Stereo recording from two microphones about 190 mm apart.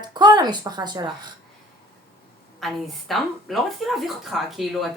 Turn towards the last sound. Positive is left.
turn(degrees=0)  # may be behind; listen again after turning